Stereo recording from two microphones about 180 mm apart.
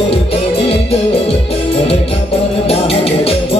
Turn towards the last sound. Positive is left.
turn(degrees=30)  # may be behind; listen again after turning